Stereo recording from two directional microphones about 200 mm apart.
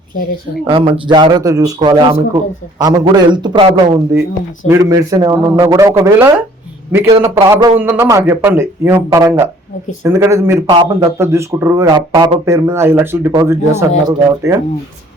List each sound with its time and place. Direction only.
0.6 s a man's voice: 25° right (ahead or behind)